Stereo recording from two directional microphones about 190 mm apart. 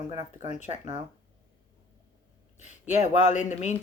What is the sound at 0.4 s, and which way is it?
Speech, 40° left (ahead or behind).